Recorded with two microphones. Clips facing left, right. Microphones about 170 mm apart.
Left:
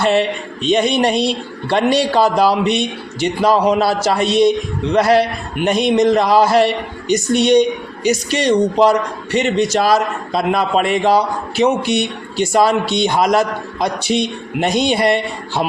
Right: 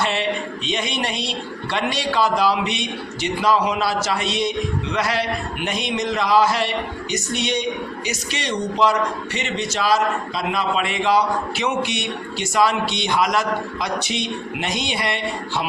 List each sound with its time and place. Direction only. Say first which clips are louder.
0.0 s a man's voice: left 7 dB; 40° left (ahead or behind)